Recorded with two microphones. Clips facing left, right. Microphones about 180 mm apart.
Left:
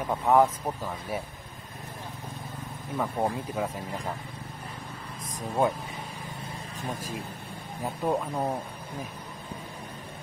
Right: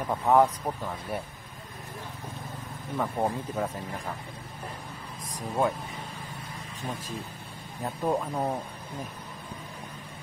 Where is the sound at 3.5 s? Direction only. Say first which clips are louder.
Even; 10° left (ahead or behind).